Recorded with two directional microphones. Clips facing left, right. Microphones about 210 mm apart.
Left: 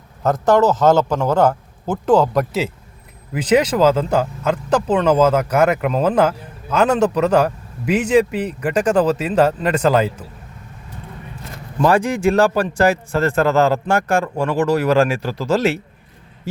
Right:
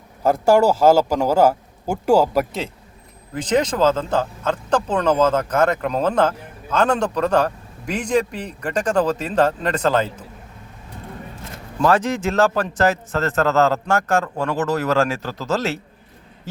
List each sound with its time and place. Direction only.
0.2 s a man's voice: 10° right (ahead or behind)
3.3 s speech: 10° left (ahead or behind)
11.8 s speech: 15° left (ahead or behind)